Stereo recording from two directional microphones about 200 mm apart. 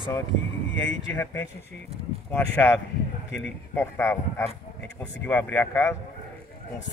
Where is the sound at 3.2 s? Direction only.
60° left (ahead or behind).